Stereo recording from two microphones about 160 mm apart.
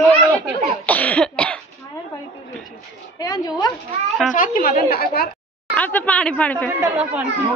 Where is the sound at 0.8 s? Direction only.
10° left (ahead or behind).